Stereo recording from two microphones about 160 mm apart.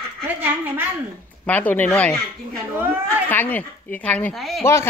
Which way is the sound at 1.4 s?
10° left (ahead or behind).